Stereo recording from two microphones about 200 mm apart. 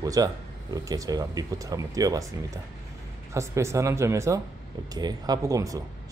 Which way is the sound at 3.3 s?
15° right (ahead or behind).